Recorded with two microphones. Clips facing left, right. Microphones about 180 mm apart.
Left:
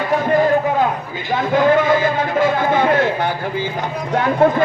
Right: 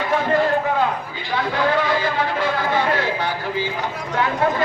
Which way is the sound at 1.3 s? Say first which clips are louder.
Left 6 dB; 45° left (ahead or behind).